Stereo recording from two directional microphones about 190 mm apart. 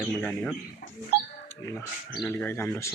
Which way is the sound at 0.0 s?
5° left (ahead or behind).